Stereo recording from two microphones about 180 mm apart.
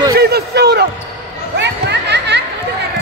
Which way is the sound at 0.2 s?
65° right (ahead or behind).